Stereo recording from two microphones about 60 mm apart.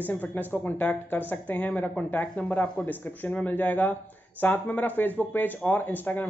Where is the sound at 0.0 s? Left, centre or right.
Left.